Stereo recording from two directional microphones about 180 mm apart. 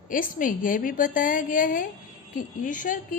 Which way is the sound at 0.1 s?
50° left (ahead or behind).